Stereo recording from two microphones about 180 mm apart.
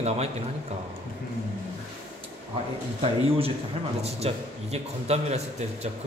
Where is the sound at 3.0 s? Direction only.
35° right (ahead or behind).